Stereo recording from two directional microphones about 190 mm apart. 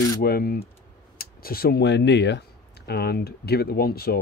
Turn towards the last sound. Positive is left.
turn(degrees=55)  # may be behind; listen again after turning